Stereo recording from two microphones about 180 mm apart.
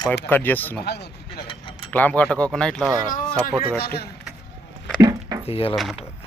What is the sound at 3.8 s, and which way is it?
Speech, 60° left (ahead or behind).